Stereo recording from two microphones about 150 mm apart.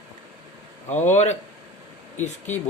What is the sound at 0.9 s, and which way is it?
Speech, 50° left (ahead or behind).